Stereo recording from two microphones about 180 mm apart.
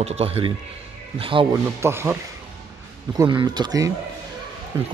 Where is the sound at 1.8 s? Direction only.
15° right (ahead or behind).